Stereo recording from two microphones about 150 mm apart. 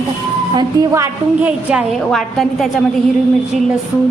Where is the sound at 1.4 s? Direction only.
5° right (ahead or behind).